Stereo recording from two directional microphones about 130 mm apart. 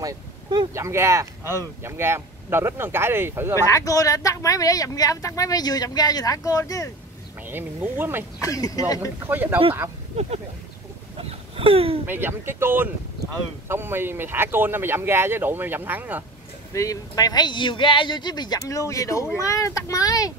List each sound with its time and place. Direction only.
0.0 s speech: 35° right (ahead or behind)
0.7 s speech: 20° right (ahead or behind)
3.6 s speech: 25° left (ahead or behind)
7.4 s speech: 15° right (ahead or behind)
8.4 s speech: 25° left (ahead or behind)
9.2 s speech: 15° right (ahead or behind)
11.1 s a sound: 45° right (ahead or behind)
12.1 s speech: 15° right (ahead or behind)
16.7 s speech: 25° left (ahead or behind)